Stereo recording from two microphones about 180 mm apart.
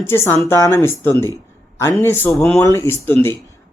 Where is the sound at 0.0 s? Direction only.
15° left (ahead or behind).